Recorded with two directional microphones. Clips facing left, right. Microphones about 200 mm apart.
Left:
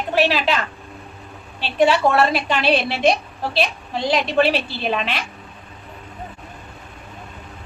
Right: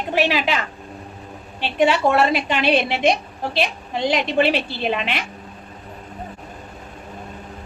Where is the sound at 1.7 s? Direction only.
15° right (ahead or behind).